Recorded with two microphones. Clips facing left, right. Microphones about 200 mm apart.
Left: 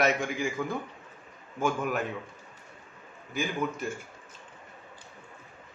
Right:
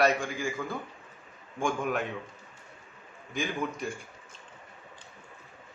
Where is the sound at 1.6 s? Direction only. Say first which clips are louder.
Left 1 dB; 5° left (ahead or behind).